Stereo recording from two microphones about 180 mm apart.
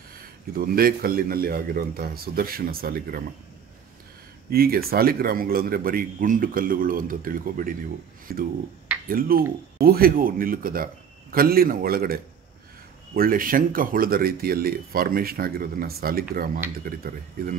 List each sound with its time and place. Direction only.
0.6 s speech: 55° right (ahead or behind)
4.5 s speech: 55° right (ahead or behind)